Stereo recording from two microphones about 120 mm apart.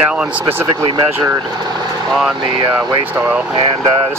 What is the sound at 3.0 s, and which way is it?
Speech, 15° right (ahead or behind).